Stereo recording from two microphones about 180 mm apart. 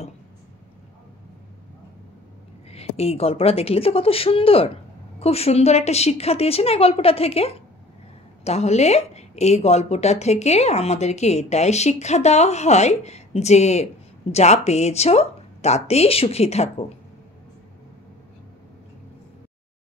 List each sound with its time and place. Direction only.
2.7 s speech: 35° left (ahead or behind)